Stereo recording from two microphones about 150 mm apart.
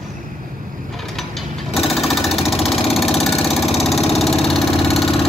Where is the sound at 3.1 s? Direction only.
Centre (ahead or behind).